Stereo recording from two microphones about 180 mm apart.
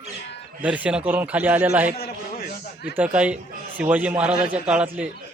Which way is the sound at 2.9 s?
5° right (ahead or behind).